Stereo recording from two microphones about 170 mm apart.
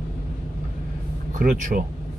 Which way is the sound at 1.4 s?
55° right (ahead or behind).